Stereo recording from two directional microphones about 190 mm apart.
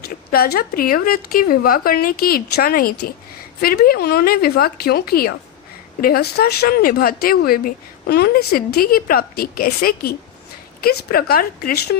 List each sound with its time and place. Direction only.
0.0 s speech: 55° left (ahead or behind)